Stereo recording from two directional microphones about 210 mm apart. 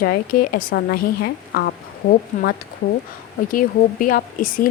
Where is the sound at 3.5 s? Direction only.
40° left (ahead or behind).